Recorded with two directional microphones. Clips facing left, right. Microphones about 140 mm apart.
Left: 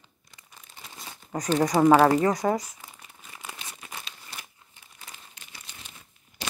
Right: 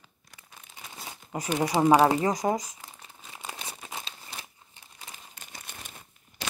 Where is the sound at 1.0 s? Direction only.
10° right (ahead or behind).